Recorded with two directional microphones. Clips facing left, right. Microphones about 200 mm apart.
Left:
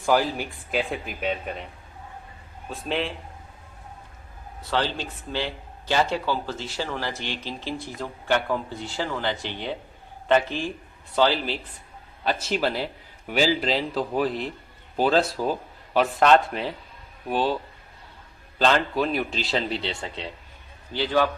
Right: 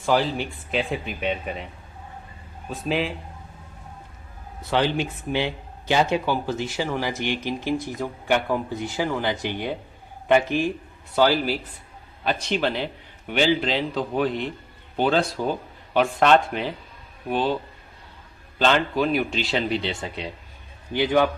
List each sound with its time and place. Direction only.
0.0 s a man's voice: 5° left (ahead or behind)
2.6 s a man's voice: 5° right (ahead or behind)
4.7 s speech: 15° right (ahead or behind)
12.2 s a man's voice: 5° left (ahead or behind)
18.6 s a man's voice: centre (ahead or behind)
19.8 s speech: 20° right (ahead or behind)